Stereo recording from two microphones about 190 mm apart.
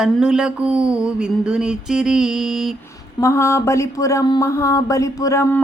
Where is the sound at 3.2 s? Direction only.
15° left (ahead or behind).